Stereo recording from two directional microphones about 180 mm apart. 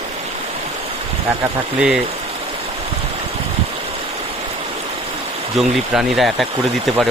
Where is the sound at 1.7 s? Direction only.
5° right (ahead or behind).